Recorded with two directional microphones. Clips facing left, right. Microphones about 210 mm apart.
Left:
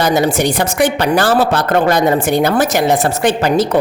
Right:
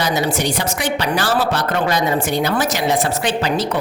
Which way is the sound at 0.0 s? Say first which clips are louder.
Left 6 dB; 50° left (ahead or behind).